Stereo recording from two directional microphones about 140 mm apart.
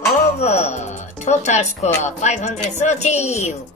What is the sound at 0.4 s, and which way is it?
Speech, 50° left (ahead or behind).